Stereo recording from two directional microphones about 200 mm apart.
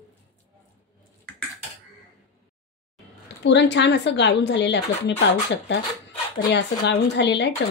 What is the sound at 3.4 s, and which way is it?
Speech, 60° left (ahead or behind).